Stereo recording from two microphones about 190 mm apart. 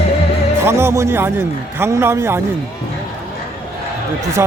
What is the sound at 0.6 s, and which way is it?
A man's voice, 15° right (ahead or behind).